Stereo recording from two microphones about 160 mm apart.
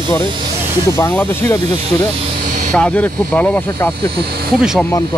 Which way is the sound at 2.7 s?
5° left (ahead or behind).